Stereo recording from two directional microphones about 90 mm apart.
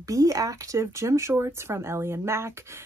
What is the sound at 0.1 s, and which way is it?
Speech, 40° right (ahead or behind).